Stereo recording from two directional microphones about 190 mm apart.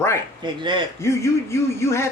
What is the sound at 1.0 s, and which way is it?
Speech, 15° left (ahead or behind).